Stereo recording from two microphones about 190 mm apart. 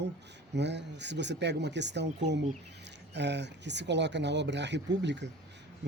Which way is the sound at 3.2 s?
65° right (ahead or behind).